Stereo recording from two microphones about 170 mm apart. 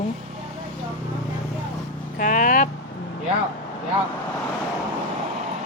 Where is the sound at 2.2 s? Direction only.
50° left (ahead or behind).